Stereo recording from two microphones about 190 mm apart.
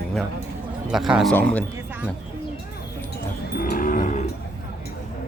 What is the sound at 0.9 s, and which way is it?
Speech, 5° right (ahead or behind).